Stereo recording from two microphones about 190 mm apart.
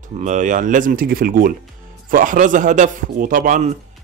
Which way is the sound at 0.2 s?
40° right (ahead or behind).